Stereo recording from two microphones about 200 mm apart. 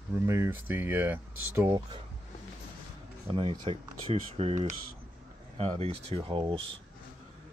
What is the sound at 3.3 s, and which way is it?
Speech, 25° right (ahead or behind).